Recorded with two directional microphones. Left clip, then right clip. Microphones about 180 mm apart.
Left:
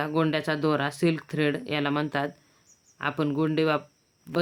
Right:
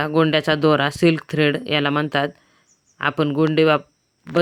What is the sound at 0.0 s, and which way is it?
Speech, 35° right (ahead or behind).